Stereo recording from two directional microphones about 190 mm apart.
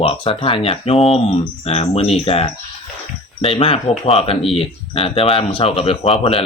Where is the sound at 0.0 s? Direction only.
30° left (ahead or behind).